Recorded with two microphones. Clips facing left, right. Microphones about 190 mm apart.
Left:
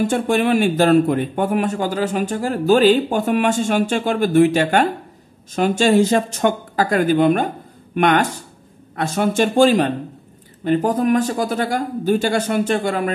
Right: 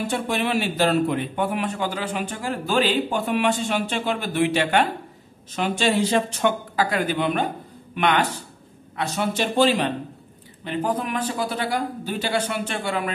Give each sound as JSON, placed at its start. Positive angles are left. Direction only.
{"t": 0.0, "sound": "speech", "side_deg": 50}